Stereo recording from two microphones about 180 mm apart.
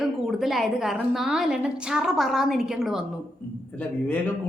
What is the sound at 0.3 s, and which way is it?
A woman's voice, centre (ahead or behind).